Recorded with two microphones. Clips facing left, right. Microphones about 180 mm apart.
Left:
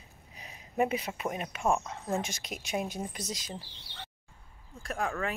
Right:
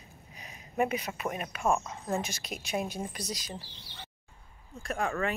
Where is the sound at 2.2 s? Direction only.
20° left (ahead or behind).